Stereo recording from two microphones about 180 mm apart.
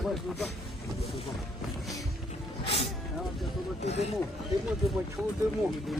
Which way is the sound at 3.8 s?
35° left (ahead or behind).